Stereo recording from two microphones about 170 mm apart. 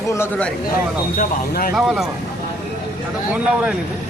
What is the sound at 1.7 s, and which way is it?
Speech, centre (ahead or behind).